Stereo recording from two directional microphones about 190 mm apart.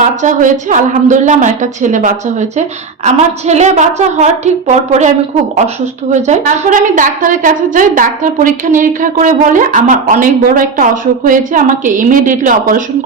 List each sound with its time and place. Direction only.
0.2 s a woman's voice: 40° right (ahead or behind)